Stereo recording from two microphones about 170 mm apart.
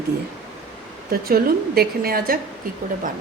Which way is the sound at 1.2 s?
65° right (ahead or behind).